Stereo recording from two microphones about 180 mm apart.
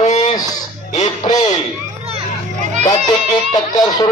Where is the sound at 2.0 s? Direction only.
35° right (ahead or behind).